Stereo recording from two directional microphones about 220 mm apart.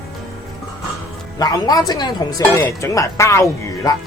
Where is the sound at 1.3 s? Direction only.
15° left (ahead or behind).